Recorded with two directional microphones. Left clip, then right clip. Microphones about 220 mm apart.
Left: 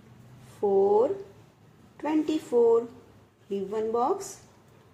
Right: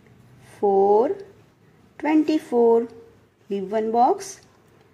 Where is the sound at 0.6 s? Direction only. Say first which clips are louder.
Right 5 dB; 40° right (ahead or behind).